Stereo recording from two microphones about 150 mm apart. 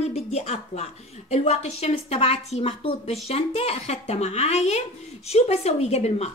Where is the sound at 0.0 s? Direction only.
45° left (ahead or behind).